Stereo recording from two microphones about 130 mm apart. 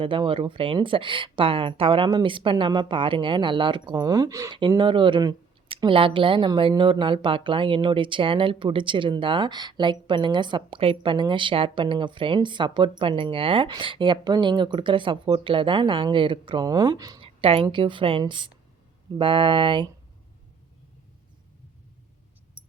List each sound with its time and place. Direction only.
0.0 s speech: 40° right (ahead or behind); by 4.5 s 25° right (ahead or behind)
4.8 s speech: 40° right (ahead or behind)
17.2 s a woman's voice: 45° right (ahead or behind)